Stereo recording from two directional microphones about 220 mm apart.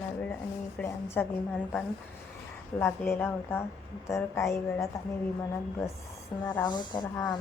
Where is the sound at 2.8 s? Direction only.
10° left (ahead or behind).